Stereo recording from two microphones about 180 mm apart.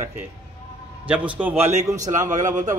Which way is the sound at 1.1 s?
10° right (ahead or behind).